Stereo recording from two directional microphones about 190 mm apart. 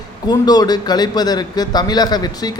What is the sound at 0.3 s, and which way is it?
A man's voice, 20° left (ahead or behind).